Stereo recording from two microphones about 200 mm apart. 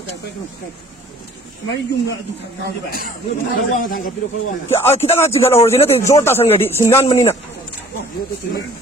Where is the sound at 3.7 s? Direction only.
40° left (ahead or behind).